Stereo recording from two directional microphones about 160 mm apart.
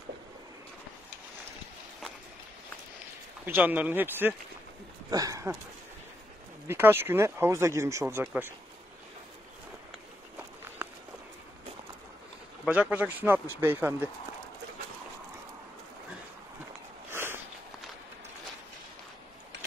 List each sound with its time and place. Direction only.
3.4 s speech: 10° right (ahead or behind)
6.7 s speech: 15° right (ahead or behind)
10.8 s walk: 10° right (ahead or behind)
12.6 s speech: 10° right (ahead or behind)
17.1 s a sound: 15° right (ahead or behind)